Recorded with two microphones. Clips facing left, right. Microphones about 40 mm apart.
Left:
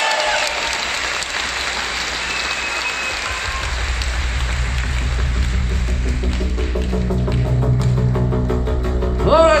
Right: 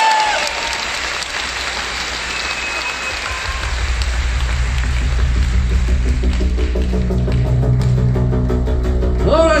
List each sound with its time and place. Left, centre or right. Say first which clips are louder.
0.0 s applause: right 4 dB; centre
8.2 s music: right 1 dB; centre
9.2 s music: left 1 dB; centre